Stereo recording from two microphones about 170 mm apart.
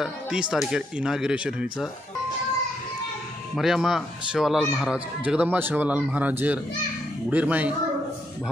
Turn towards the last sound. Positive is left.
turn(degrees=-10)  # may be behind; listen again after turning